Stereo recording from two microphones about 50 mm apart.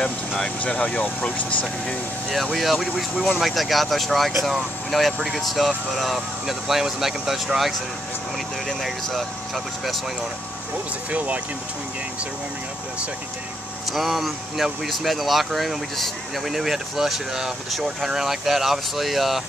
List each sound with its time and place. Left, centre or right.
0.4 s speech: left
2.5 s speech: centre
11.1 s speech: right
13.9 s speech: centre